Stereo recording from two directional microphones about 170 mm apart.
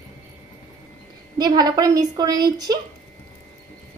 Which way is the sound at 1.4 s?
20° right (ahead or behind).